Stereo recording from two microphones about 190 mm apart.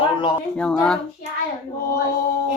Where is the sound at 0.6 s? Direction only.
5° left (ahead or behind).